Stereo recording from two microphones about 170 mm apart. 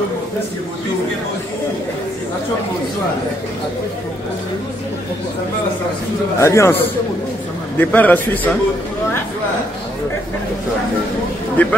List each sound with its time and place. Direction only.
6.4 s a man's voice: 15° left (ahead or behind)
11.6 s a man's voice: 10° left (ahead or behind)